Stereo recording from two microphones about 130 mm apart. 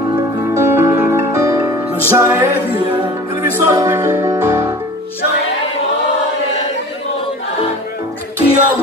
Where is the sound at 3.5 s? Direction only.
25° right (ahead or behind).